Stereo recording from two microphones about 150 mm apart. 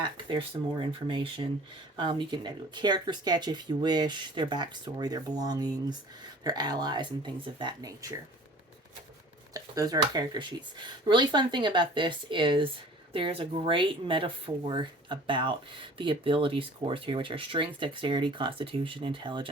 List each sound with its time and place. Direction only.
0.0 s speech: 35° right (ahead or behind)
9.5 s speech: 20° right (ahead or behind)